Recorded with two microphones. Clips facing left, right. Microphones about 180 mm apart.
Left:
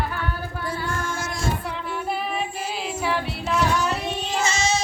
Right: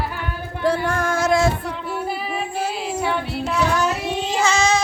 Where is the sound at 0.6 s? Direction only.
65° right (ahead or behind).